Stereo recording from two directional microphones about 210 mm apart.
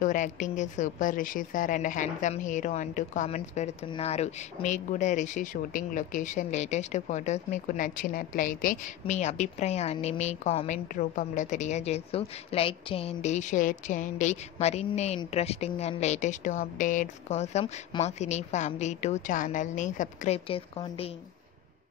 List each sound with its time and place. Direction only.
0.0 s a woman's voice: 35° left (ahead or behind)